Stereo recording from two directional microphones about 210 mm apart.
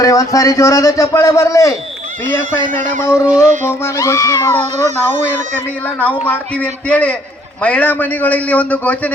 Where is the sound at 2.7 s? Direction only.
40° right (ahead or behind).